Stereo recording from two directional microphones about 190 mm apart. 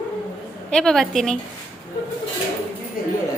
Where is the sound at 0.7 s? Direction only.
5° left (ahead or behind).